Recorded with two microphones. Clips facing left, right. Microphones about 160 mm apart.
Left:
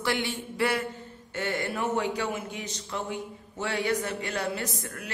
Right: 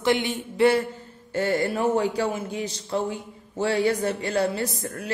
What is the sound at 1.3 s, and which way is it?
A man's voice, 35° right (ahead or behind).